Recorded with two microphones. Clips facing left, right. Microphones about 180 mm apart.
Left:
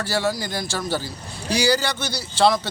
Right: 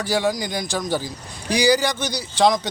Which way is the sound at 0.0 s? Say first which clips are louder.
Right 2 dB; 15° right (ahead or behind).